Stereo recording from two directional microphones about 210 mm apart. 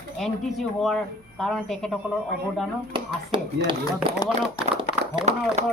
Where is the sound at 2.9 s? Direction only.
25° right (ahead or behind).